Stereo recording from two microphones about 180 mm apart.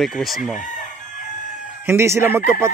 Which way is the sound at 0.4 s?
45° left (ahead or behind).